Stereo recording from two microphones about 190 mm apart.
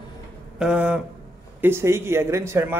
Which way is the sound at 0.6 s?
5° right (ahead or behind).